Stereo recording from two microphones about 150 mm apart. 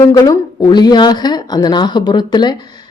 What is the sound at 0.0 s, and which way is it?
Speech, 20° left (ahead or behind).